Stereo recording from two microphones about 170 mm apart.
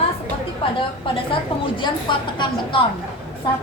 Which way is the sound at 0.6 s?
30° left (ahead or behind).